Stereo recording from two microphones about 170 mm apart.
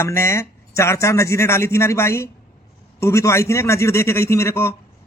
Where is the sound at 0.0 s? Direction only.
15° left (ahead or behind).